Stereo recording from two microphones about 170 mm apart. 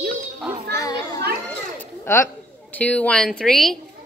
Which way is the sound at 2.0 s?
15° left (ahead or behind).